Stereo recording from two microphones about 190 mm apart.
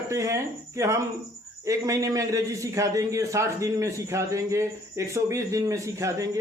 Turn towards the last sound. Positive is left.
turn(degrees=-15)  # may be behind; listen again after turning